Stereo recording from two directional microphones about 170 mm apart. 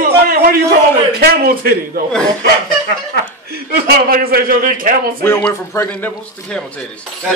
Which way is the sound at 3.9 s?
60° right (ahead or behind).